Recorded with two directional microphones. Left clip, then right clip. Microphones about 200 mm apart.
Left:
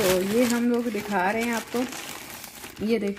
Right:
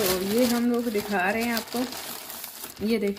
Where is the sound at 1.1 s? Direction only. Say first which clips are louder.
Left 2 dB; 30° left (ahead or behind).